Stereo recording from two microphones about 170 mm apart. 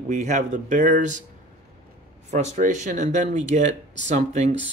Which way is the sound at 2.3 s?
40° right (ahead or behind).